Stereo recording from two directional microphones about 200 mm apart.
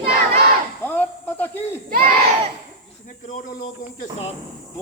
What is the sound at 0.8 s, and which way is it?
Speech, 10° left (ahead or behind).